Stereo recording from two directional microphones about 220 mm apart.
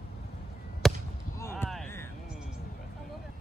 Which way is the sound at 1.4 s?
10° left (ahead or behind).